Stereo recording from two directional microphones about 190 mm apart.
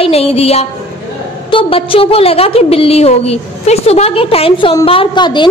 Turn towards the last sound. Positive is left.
turn(degrees=25)  # may be behind; listen again after turning